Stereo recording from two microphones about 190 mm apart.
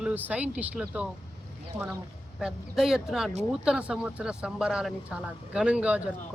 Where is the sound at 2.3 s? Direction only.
Centre (ahead or behind).